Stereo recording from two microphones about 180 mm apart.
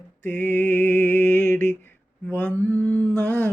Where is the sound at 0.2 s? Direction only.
10° left (ahead or behind).